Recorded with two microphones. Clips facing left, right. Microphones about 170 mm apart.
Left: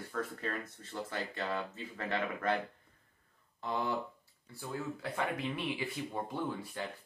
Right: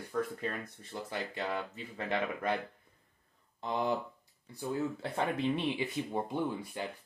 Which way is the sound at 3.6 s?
20° right (ahead or behind).